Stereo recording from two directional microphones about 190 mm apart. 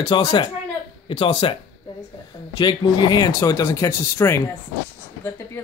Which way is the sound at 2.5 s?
25° left (ahead or behind).